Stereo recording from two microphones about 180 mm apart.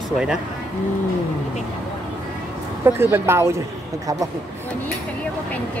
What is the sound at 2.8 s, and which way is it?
Speech, 15° right (ahead or behind).